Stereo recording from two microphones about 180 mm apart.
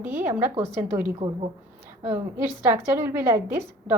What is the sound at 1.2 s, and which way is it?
Speech, 35° right (ahead or behind).